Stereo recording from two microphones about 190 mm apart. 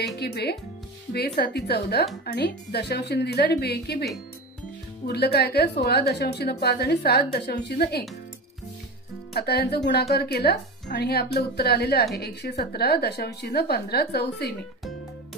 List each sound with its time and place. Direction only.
0.0 s a woman's voice: 60° left (ahead or behind)
9.3 s a woman's voice: 55° left (ahead or behind)